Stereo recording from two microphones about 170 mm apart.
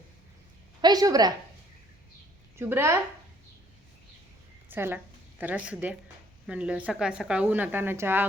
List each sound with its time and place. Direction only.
0.8 s a woman's voice: 25° right (ahead or behind)
2.6 s speech: 15° right (ahead or behind)
4.7 s a woman's voice: 10° right (ahead or behind)